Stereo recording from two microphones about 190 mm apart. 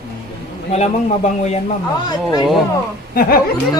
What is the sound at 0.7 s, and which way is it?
Speech, 35° left (ahead or behind).